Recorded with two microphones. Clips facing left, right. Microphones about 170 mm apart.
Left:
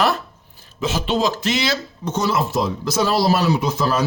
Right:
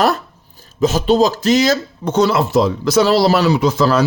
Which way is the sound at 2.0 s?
65° right (ahead or behind).